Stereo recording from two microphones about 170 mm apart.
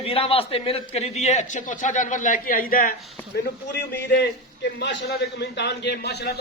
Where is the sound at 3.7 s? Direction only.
80° left.